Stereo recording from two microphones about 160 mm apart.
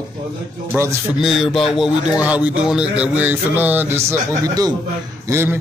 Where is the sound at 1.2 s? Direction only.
Centre (ahead or behind).